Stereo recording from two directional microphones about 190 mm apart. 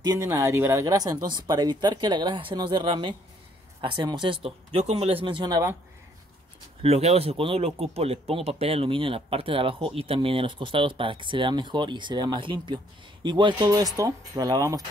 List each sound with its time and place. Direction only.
0.0 s speech: 20° right (ahead or behind)
6.8 s speech: 35° right (ahead or behind); by 14.8 s 20° right (ahead or behind)